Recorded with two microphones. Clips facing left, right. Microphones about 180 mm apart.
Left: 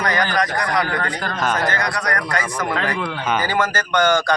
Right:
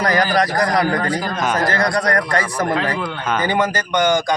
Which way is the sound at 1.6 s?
35° right (ahead or behind).